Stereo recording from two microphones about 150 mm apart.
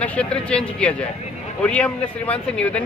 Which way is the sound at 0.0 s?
10° left (ahead or behind).